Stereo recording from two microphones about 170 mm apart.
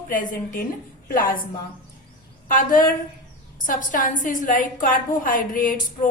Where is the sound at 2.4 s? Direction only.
55° left (ahead or behind).